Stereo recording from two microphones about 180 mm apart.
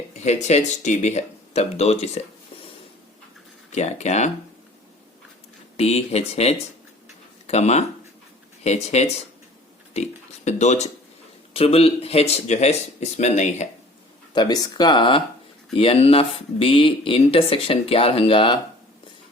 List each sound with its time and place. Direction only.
0.1 s speech: 40° left (ahead or behind)
3.7 s speech: 40° left (ahead or behind)
5.7 s speech: 35° left (ahead or behind)
10.4 s speech: 40° left (ahead or behind)
14.3 s speech: 20° left (ahead or behind)